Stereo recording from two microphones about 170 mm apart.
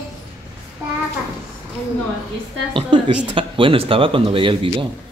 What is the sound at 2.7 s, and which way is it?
A man's voice, 30° right (ahead or behind).